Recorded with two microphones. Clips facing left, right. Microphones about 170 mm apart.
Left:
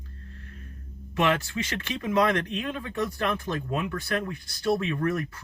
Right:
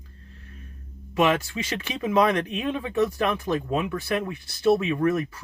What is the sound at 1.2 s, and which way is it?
Speech, 20° right (ahead or behind).